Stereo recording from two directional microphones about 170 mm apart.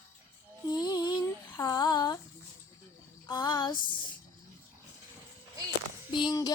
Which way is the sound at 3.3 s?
25° left (ahead or behind).